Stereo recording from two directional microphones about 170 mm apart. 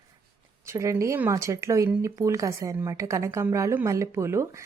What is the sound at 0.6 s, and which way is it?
Speech, 15° right (ahead or behind).